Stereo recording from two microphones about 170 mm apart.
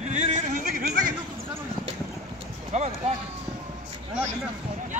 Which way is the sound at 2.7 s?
40° right (ahead or behind).